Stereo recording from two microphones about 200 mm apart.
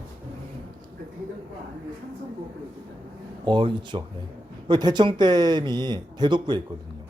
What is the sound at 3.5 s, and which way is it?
Speech, 25° right (ahead or behind).